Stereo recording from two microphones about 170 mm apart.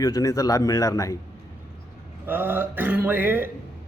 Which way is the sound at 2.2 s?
10° right (ahead or behind).